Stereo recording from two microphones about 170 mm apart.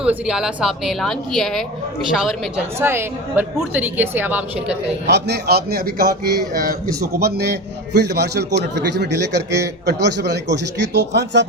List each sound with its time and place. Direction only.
0.0 s speech: 5° right (ahead or behind)
2.7 s a woman's voice: 15° right (ahead or behind)
5.0 s a man's voice: 80° right